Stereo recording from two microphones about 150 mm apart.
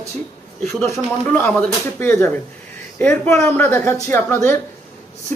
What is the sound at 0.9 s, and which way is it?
Speech, 10° left (ahead or behind).